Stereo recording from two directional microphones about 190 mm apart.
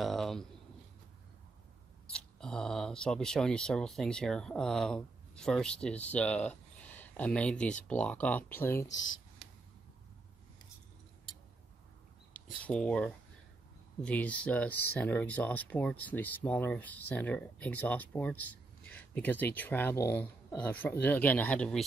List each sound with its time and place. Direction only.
0.0 s a sound: centre (ahead or behind)
2.0 s speech: 5° left (ahead or behind)
8.9 s speech: 90° left
12.4 s speech: 5° left (ahead or behind)